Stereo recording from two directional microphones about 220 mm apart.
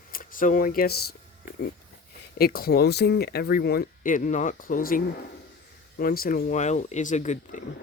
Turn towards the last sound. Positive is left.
turn(degrees=35)  # may be behind; listen again after turning